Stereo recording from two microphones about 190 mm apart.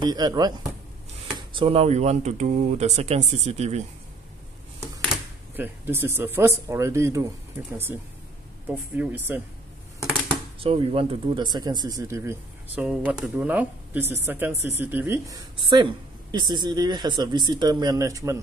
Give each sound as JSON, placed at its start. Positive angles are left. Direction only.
{"t": 0.0, "sound": "speech", "side_deg": -20}
{"t": 5.6, "sound": "speech", "side_deg": -10}
{"t": 10.6, "sound": "speech", "side_deg": -30}